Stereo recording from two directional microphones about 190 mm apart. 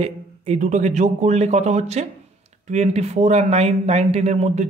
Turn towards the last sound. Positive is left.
turn(degrees=-35)  # may be behind; listen again after turning